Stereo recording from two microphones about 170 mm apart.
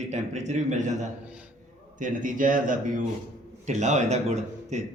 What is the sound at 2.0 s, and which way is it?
A man's voice, 50° right (ahead or behind).